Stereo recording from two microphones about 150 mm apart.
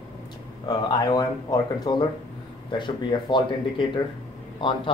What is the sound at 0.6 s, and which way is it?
Speech, 25° left (ahead or behind).